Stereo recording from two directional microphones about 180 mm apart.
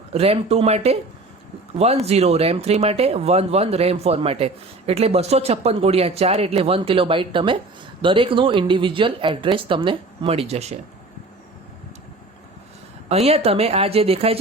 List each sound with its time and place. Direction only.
0.1 s speech: 35° right (ahead or behind)
13.1 s speech: 35° right (ahead or behind)